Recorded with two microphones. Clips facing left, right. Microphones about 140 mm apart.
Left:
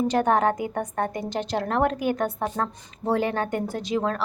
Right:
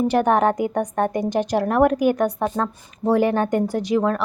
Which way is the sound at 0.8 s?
20° right (ahead or behind).